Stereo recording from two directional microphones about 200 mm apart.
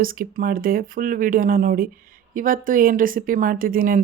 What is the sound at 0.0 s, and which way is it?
Speech, 45° right (ahead or behind).